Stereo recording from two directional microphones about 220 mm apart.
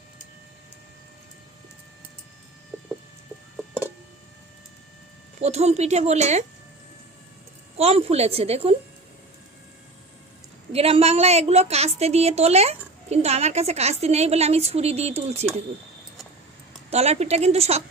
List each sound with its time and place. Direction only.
5.4 s a woman's voice: 30° right (ahead or behind)
7.8 s a woman's voice: 25° right (ahead or behind)
10.7 s a woman's voice: 25° right (ahead or behind)
16.9 s a woman's voice: 30° right (ahead or behind)